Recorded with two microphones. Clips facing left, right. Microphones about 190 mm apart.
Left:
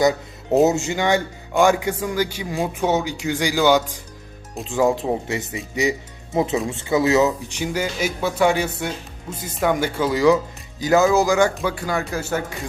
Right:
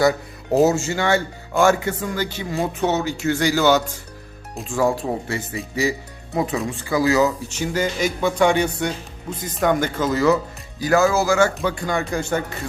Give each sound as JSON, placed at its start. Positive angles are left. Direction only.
{"t": 0.6, "sound": "speech", "side_deg": 20}
{"t": 11.5, "sound": "speech", "side_deg": 5}